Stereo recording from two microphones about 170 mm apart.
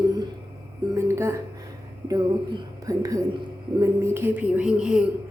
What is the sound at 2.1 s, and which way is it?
A woman's voice, 20° right (ahead or behind).